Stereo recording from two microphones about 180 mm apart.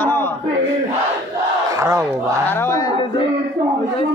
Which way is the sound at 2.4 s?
15° left (ahead or behind).